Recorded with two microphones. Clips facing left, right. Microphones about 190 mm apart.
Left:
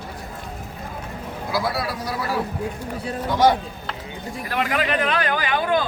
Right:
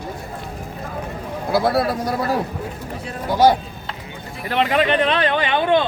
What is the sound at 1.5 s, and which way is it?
Speech, 55° right (ahead or behind).